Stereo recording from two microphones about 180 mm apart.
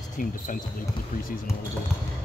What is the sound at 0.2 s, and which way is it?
Speech, 50° left (ahead or behind).